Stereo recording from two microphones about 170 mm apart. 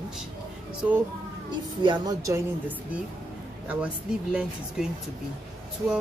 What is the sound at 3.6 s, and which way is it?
Speech, 10° right (ahead or behind).